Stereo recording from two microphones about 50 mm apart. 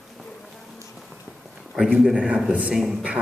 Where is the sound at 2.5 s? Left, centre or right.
Right.